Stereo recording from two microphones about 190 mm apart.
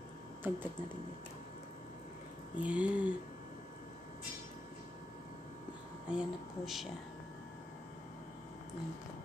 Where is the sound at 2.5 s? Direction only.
5° right (ahead or behind).